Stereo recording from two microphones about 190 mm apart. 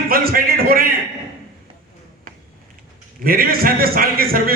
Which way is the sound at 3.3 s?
50° right (ahead or behind).